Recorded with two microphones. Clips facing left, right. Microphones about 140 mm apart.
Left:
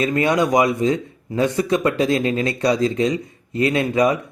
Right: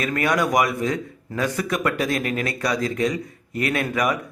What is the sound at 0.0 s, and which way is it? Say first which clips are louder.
Speech: left 4 dB; 25° left (ahead or behind).